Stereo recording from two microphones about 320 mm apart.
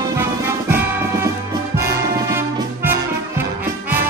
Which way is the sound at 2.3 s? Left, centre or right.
Centre.